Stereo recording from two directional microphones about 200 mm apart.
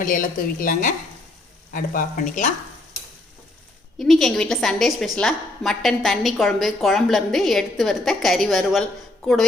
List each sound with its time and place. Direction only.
0.0 s a woman's voice: 45° left (ahead or behind)
3.9 s a woman's voice: centre (ahead or behind)